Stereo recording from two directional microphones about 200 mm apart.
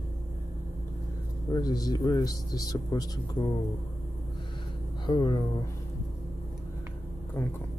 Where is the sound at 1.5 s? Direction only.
20° left (ahead or behind).